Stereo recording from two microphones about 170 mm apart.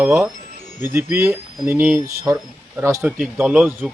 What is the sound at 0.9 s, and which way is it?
Speech, 15° right (ahead or behind).